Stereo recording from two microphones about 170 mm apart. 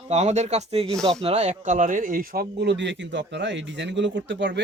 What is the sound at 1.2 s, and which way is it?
Speech, 40° right (ahead or behind).